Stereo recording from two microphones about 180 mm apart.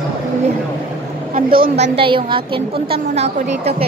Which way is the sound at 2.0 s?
30° right (ahead or behind).